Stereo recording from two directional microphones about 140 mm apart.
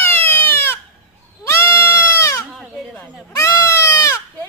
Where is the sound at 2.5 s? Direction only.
Centre (ahead or behind).